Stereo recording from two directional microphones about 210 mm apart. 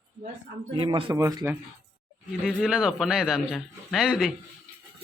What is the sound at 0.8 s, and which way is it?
Speech, 25° right (ahead or behind).